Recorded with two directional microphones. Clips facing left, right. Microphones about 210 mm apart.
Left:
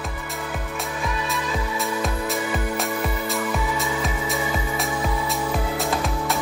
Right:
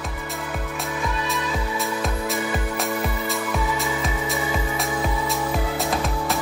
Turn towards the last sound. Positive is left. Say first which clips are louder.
# even
turn(degrees=0)  # may be behind; listen again after turning